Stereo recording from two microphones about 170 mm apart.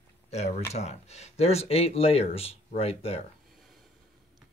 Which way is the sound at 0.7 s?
40° left (ahead or behind).